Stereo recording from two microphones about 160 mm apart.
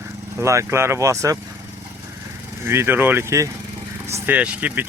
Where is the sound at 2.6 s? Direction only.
15° right (ahead or behind).